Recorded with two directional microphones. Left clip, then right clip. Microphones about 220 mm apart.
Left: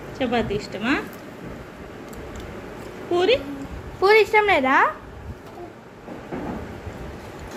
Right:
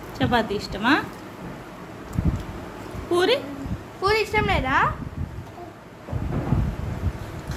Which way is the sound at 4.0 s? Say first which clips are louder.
Left 6 dB; 20° left (ahead or behind).